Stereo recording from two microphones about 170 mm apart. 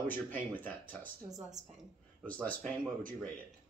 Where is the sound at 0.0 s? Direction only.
10° left (ahead or behind).